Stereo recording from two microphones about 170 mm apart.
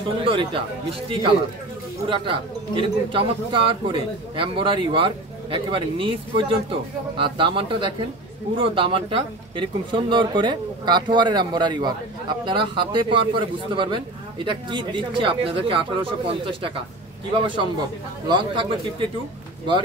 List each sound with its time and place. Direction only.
0.2 s speech: 30° right (ahead or behind)
18.3 s speech: 30° right (ahead or behind)